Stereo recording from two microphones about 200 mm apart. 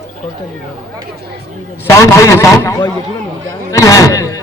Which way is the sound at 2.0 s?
15° left (ahead or behind).